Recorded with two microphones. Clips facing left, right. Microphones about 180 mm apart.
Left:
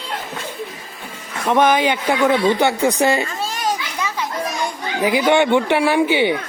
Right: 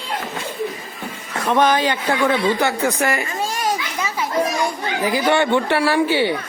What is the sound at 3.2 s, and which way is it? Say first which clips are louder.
Children playing: even; 15° right (ahead or behind).